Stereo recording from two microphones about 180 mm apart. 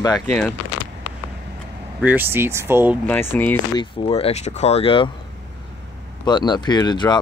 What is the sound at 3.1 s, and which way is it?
Speech, 10° left (ahead or behind).